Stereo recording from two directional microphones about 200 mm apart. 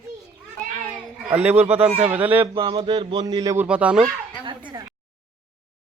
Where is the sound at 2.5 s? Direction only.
25° right (ahead or behind); by 4.1 s 5° right (ahead or behind).